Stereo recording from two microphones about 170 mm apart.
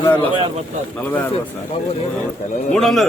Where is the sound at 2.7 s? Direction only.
Centre (ahead or behind).